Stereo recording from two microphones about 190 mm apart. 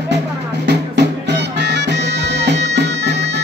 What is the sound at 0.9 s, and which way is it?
Music, 65° right (ahead or behind).